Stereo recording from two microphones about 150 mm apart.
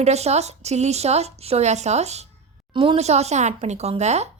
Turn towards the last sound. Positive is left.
turn(degrees=-50)  # may be behind; listen again after turning